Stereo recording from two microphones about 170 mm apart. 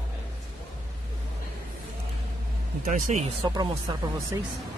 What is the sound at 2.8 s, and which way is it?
Speech, 50° right (ahead or behind).